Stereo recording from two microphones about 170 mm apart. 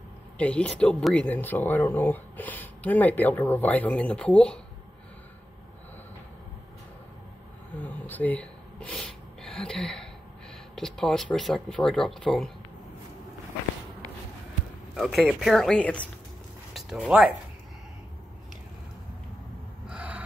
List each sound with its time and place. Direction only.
0.4 s speech: 5° left (ahead or behind)
8.1 s a sound: 10° left (ahead or behind)
10.8 s speech: 5° left (ahead or behind)
15.0 s speech: 5° right (ahead or behind)
19.9 s gasp: 10° right (ahead or behind)